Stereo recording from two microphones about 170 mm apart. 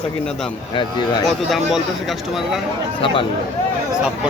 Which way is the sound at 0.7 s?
25° left (ahead or behind).